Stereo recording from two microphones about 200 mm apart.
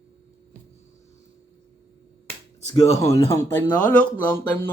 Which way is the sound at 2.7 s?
30° left (ahead or behind).